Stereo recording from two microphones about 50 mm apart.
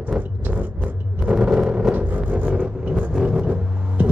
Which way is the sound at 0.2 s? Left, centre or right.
Right.